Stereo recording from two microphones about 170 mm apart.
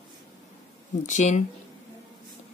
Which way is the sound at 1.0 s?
45° left (ahead or behind).